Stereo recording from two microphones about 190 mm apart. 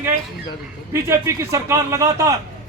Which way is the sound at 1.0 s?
15° right (ahead or behind).